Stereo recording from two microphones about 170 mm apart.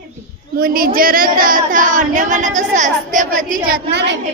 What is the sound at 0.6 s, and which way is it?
Speech, 60° right (ahead or behind).